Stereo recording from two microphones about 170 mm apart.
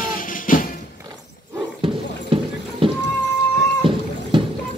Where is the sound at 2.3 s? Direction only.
30° right (ahead or behind).